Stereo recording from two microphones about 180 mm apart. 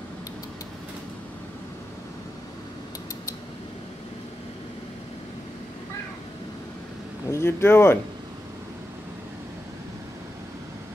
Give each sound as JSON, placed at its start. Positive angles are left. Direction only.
{"t": 7.2, "sound": "speech", "side_deg": 15}